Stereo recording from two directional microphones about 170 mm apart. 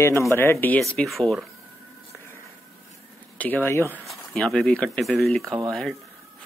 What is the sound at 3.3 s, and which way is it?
Speech, 10° left (ahead or behind).